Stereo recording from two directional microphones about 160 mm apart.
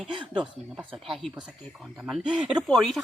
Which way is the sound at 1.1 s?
Centre (ahead or behind).